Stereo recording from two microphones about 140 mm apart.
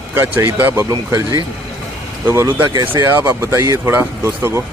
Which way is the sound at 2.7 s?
30° right (ahead or behind).